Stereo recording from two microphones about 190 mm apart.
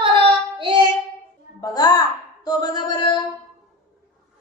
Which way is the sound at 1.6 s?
20° left (ahead or behind).